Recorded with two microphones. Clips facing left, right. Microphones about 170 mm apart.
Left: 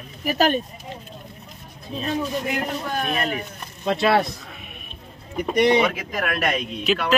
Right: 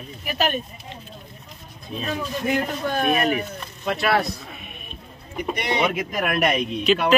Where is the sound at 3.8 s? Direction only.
25° left (ahead or behind).